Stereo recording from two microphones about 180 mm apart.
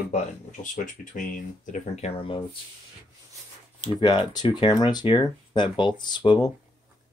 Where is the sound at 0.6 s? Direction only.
45° left (ahead or behind); by 2.5 s 30° left (ahead or behind).